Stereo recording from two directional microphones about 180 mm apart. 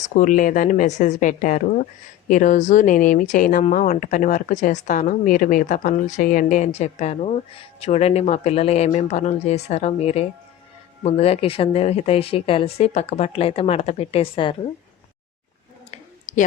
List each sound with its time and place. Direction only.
0.0 s speech: 45° left (ahead or behind)
15.9 s clicking: 45° left (ahead or behind)